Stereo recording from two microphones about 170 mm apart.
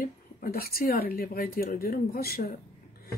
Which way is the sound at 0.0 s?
60° left (ahead or behind).